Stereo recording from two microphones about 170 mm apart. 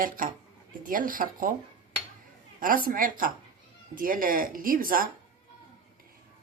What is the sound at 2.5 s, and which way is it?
Speech, 55° right (ahead or behind).